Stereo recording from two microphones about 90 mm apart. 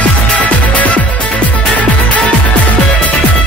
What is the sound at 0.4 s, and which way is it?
Music, 15° left (ahead or behind).